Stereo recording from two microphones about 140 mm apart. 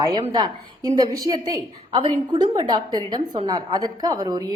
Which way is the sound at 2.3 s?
30° right (ahead or behind).